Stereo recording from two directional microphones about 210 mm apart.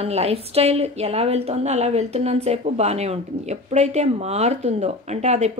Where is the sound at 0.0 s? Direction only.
30° right (ahead or behind).